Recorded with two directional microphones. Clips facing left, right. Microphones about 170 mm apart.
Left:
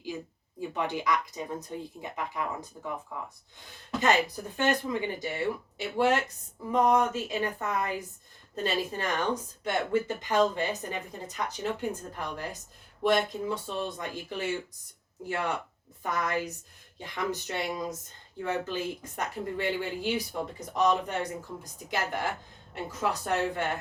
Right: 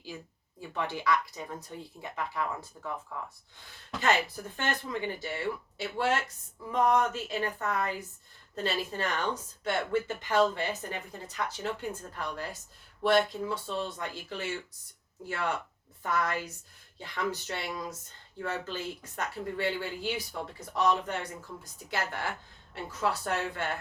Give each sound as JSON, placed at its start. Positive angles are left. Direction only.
{"t": 0.7, "sound": "speech", "side_deg": 15}